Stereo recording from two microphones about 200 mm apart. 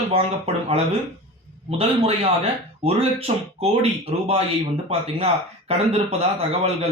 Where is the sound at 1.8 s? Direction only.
30° right (ahead or behind).